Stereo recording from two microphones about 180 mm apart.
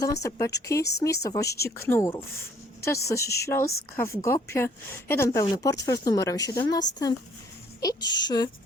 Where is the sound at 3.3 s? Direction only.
15° left (ahead or behind).